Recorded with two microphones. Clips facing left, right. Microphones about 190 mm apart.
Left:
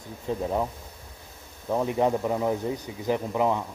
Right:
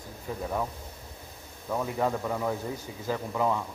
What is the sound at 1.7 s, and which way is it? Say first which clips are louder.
Speech: left 5 dB; 20° left (ahead or behind).